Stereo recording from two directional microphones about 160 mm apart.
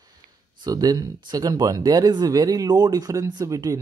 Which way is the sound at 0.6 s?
25° right (ahead or behind).